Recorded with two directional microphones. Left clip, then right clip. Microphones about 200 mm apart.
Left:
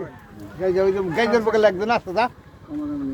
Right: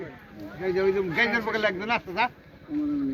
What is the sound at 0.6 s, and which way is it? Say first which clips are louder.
Speech: left 5 dB; 30° left (ahead or behind).